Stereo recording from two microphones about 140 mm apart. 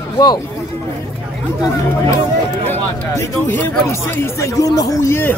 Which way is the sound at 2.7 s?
15° left (ahead or behind).